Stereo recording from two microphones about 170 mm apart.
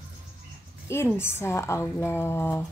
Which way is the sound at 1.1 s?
15° left (ahead or behind).